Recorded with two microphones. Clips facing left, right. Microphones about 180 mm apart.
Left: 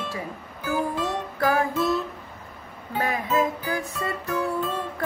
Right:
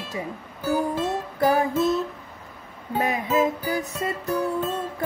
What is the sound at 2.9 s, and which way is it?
Speech, 20° right (ahead or behind).